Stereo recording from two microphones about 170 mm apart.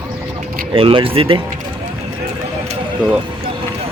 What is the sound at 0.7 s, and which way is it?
Speech, 30° right (ahead or behind).